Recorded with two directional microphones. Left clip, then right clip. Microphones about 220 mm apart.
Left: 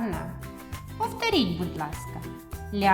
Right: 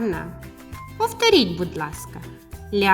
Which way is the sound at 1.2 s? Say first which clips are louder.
Right 9 dB; 25° right (ahead or behind).